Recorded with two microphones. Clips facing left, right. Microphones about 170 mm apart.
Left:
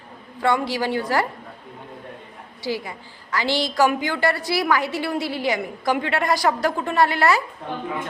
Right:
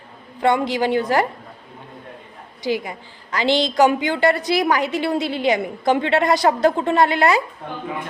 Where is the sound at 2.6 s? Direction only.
20° right (ahead or behind).